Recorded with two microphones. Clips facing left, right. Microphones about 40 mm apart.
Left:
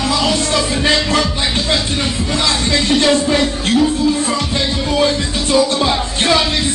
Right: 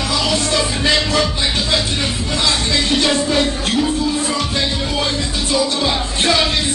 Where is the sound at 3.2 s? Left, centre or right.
Left.